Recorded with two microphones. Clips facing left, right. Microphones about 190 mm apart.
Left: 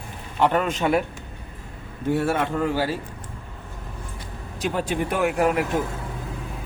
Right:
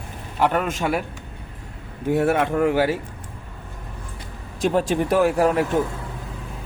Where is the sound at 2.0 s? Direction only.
15° right (ahead or behind).